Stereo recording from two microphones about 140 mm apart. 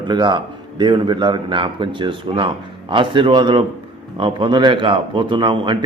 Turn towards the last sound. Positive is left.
turn(degrees=-35)  # may be behind; listen again after turning